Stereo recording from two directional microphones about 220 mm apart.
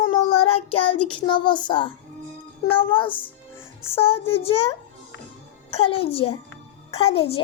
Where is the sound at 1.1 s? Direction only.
20° left (ahead or behind).